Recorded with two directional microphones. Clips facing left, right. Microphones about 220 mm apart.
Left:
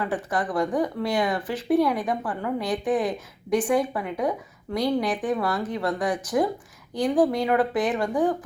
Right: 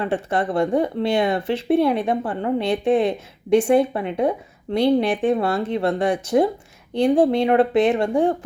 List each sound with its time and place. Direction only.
0.0 s speech: 25° right (ahead or behind)